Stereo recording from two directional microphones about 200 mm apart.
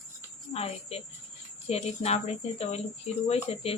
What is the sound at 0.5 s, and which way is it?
Speech, 30° left (ahead or behind).